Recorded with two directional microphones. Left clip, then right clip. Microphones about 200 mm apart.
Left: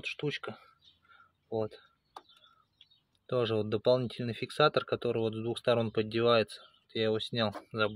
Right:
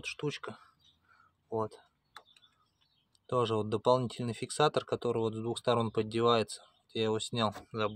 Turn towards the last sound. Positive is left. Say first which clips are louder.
# left 1 dB
turn(degrees=0)  # may be behind; listen again after turning